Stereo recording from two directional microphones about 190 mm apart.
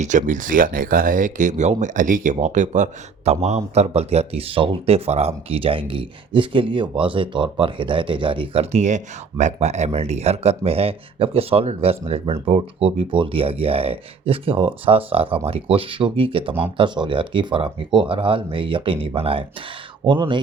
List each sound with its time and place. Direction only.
0.0 s speech: 40° right (ahead or behind); by 20.4 s 25° right (ahead or behind)